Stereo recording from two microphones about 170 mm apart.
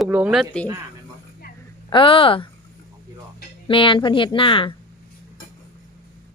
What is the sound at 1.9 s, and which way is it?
Speech, 30° left (ahead or behind).